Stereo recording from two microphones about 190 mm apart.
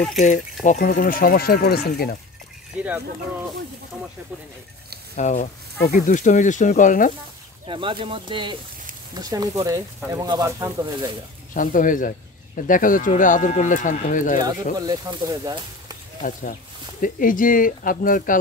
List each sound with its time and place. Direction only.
0.2 s speech: 40° left (ahead or behind); by 2.1 s 55° left (ahead or behind)
5.1 s speech: 40° left (ahead or behind)
7.6 s speech: 25° right (ahead or behind)
11.5 s speech: 45° left (ahead or behind)
14.4 s speech: 20° right (ahead or behind)
16.2 s speech: 45° left (ahead or behind)